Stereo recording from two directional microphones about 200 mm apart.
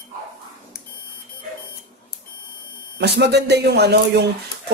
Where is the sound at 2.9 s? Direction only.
55° right (ahead or behind).